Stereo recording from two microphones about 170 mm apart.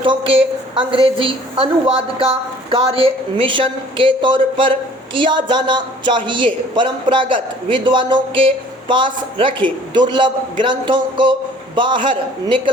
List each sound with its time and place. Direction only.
0.0 s a woman's voice: 30° right (ahead or behind)